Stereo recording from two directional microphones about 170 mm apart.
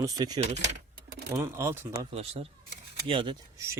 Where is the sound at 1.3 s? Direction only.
15° right (ahead or behind).